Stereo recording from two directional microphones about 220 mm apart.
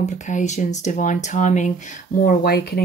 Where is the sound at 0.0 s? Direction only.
35° left (ahead or behind).